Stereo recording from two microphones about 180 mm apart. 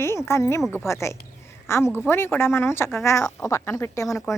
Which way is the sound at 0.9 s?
15° left (ahead or behind).